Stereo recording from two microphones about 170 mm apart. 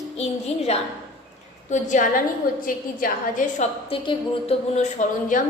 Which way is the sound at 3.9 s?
35° left (ahead or behind).